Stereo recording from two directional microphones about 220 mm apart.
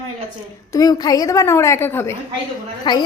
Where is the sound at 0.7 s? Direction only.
15° left (ahead or behind).